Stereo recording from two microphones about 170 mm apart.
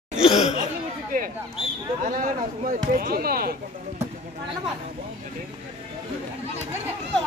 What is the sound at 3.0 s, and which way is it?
Speech, 60° right (ahead or behind).